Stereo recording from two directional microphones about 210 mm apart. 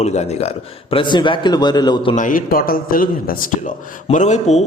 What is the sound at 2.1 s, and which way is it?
A man's voice, 40° left (ahead or behind).